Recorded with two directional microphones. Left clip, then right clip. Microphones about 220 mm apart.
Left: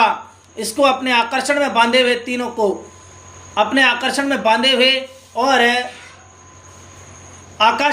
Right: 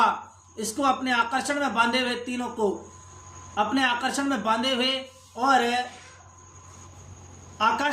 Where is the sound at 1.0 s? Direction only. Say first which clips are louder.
Left 8 dB; 15° right (ahead or behind).